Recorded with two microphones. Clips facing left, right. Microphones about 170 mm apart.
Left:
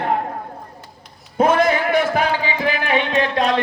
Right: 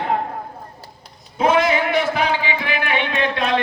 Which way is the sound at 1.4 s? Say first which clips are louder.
Left 1 dB; 50° left (ahead or behind).